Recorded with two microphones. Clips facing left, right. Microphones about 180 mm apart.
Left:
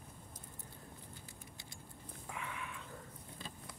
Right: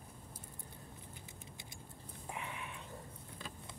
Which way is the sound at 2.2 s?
25° right (ahead or behind).